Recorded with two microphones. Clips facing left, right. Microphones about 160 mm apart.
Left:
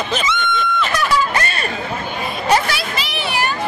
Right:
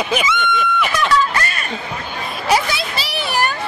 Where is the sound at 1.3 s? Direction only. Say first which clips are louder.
Left 1 dB; 25° left (ahead or behind).